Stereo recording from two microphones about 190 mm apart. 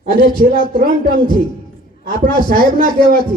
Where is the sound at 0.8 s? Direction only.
50° right (ahead or behind).